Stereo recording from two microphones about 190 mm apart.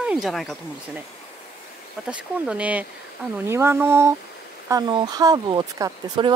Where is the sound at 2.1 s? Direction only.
5° right (ahead or behind).